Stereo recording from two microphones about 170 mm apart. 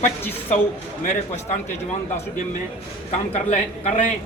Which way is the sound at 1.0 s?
45° left (ahead or behind).